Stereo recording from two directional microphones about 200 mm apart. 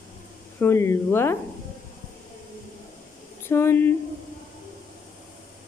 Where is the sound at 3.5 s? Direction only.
10° left (ahead or behind).